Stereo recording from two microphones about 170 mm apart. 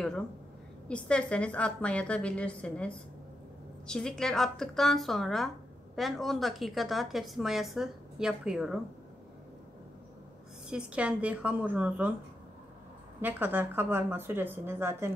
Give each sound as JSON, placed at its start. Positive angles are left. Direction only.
{"t": 0.8, "sound": "a woman's voice", "side_deg": 5}
{"t": 10.7, "sound": "speech", "side_deg": -5}
{"t": 13.2, "sound": "speech", "side_deg": -10}